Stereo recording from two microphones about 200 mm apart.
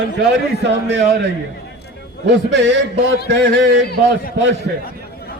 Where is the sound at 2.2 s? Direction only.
60° right (ahead or behind).